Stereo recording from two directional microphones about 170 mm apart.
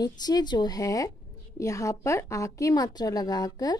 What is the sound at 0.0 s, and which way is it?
A woman's voice, 25° left (ahead or behind).